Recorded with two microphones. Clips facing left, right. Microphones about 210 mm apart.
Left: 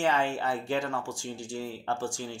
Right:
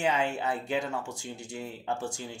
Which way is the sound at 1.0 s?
20° right (ahead or behind).